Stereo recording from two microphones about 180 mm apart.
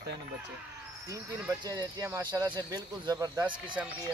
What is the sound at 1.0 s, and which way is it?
Speech, 20° right (ahead or behind).